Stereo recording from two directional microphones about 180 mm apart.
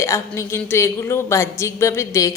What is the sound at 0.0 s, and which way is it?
A woman's voice, 15° left (ahead or behind).